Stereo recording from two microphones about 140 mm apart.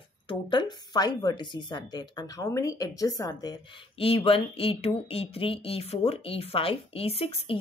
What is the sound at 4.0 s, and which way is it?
A woman's voice, 45° left (ahead or behind).